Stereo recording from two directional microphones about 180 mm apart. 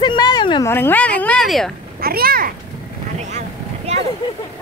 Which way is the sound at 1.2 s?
5° left (ahead or behind).